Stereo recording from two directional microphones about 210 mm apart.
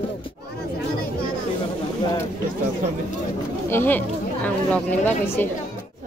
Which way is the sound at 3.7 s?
10° left (ahead or behind).